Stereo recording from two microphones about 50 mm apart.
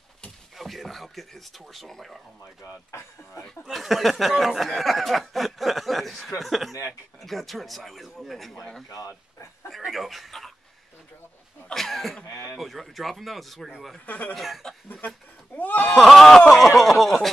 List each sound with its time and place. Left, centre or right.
0.6 s speech: centre
2.6 s speech: left
3.7 s speech: centre
9.7 s speech: centre
11.7 s speech: centre
14.0 s speech: left
14.3 s speech: centre
15.5 s speech: left
16.0 s speech: centre